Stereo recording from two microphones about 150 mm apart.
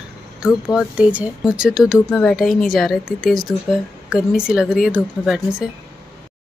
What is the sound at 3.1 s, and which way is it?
Speech, 75° left (ahead or behind).